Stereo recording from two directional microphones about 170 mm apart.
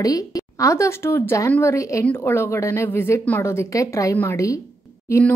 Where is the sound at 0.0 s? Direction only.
20° left (ahead or behind).